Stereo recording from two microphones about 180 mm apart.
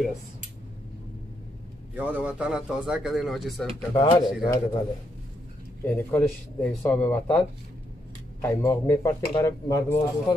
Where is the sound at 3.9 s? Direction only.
25° left (ahead or behind).